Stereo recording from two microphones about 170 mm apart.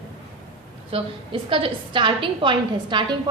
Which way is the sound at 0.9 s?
30° right (ahead or behind).